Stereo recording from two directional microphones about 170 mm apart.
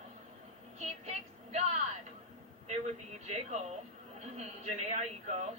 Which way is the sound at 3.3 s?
40° right (ahead or behind).